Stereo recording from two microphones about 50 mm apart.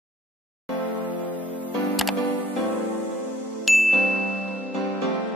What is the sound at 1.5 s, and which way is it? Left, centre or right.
Music, left.